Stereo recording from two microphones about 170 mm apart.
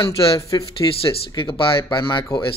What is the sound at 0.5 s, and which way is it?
Speech, 30° left (ahead or behind).